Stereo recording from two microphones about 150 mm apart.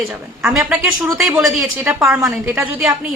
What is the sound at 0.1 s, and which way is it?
Speech, 5° right (ahead or behind).